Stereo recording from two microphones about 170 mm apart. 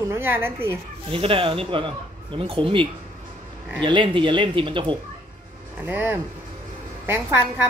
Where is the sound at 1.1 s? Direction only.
30° right (ahead or behind).